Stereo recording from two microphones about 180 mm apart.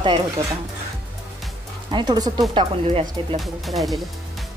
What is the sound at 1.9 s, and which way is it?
Speech, 25° right (ahead or behind).